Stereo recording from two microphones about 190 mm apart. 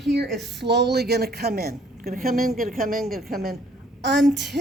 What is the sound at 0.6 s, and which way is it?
A woman's voice, 60° right (ahead or behind).